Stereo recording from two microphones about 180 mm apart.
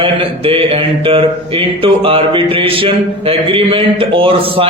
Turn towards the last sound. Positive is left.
turn(degrees=-30)  # may be behind; listen again after turning